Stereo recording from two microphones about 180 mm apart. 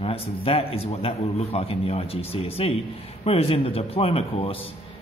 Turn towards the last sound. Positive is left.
turn(degrees=30)  # may be behind; listen again after turning